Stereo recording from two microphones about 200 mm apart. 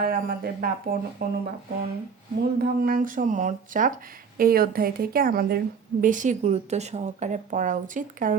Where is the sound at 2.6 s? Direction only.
45° right (ahead or behind).